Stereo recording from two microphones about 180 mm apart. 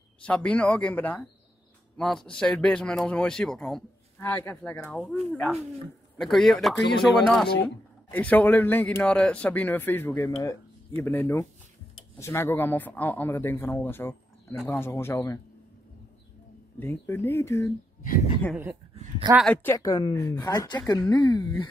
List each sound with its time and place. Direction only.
0.2 s speech: 5° left (ahead or behind)
16.8 s speech: 10° left (ahead or behind)
19.4 s a woman's voice: 10° left (ahead or behind); by 21.6 s 25° left (ahead or behind)